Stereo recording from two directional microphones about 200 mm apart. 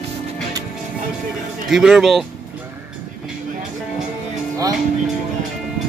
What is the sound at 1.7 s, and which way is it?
Speech, centre (ahead or behind).